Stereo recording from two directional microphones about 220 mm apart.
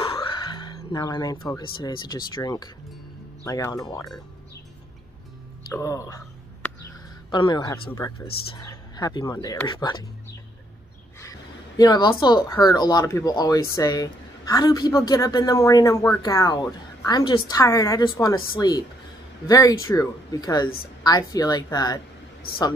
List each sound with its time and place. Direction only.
0.0 s speech: 25° left (ahead or behind)
5.7 s a sound: 15° left (ahead or behind)
7.2 s speech: 20° left (ahead or behind)
11.1 s speech: 15° left (ahead or behind)